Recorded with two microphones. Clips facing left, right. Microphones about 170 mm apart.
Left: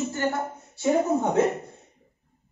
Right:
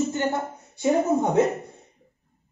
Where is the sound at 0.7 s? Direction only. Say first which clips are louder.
Right 1 dB; 15° right (ahead or behind).